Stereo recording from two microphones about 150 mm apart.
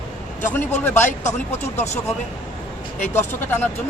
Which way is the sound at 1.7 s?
50° left (ahead or behind).